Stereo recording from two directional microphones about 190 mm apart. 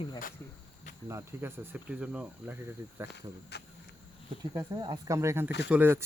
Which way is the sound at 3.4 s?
60° left (ahead or behind).